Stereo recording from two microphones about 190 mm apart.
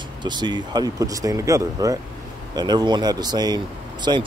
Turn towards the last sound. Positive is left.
turn(degrees=-25)  # may be behind; listen again after turning